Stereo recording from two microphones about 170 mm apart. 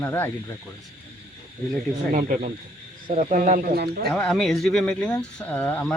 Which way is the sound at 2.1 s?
50° right (ahead or behind).